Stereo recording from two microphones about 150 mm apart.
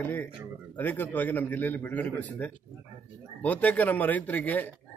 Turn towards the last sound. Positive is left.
turn(degrees=10)  # may be behind; listen again after turning